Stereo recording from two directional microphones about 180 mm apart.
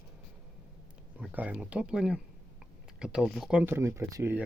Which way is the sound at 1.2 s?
10° right (ahead or behind).